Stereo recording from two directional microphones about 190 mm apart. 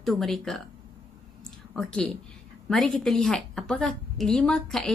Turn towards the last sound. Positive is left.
turn(degrees=0)  # may be behind; listen again after turning